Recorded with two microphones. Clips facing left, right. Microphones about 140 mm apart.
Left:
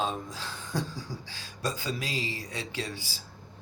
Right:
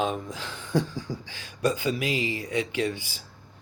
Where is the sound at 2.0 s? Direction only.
15° right (ahead or behind).